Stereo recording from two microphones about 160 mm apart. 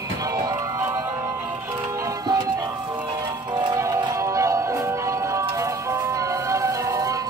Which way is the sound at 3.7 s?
20° right (ahead or behind).